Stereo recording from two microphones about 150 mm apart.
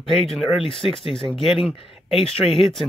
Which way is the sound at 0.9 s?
35° left (ahead or behind).